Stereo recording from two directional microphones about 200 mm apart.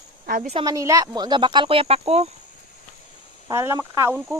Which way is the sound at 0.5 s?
20° right (ahead or behind).